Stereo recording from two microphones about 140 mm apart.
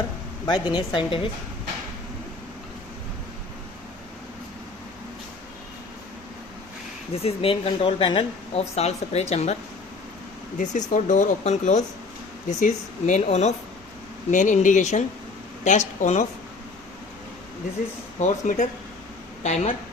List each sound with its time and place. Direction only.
0.4 s speech: 30° left (ahead or behind)
7.2 s speech: 45° left (ahead or behind)
8.7 s speech: 50° left (ahead or behind)
10.6 s speech: 60° left (ahead or behind)
14.3 s speech: 65° left (ahead or behind)
18.2 s speech: 60° left (ahead or behind)